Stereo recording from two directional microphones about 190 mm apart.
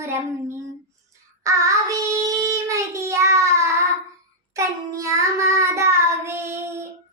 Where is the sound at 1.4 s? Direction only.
15° right (ahead or behind).